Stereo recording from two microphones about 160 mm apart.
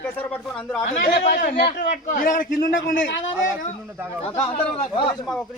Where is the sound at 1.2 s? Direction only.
70° left (ahead or behind).